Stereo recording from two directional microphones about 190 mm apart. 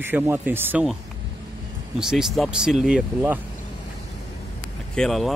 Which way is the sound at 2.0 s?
Centre (ahead or behind).